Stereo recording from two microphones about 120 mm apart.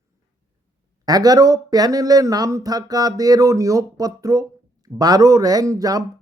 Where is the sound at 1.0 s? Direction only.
30° right (ahead or behind).